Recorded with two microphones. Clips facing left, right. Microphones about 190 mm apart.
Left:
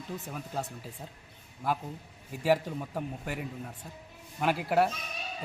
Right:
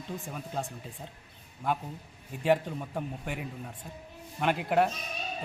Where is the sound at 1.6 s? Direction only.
5° left (ahead or behind).